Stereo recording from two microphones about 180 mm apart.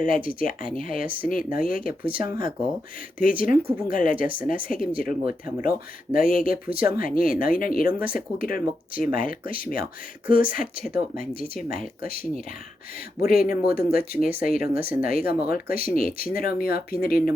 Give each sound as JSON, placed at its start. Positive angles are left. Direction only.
{"t": 0.0, "sound": "speech", "side_deg": 50}